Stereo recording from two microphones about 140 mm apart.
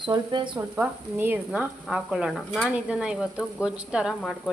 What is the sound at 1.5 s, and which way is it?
Speech, 5° right (ahead or behind).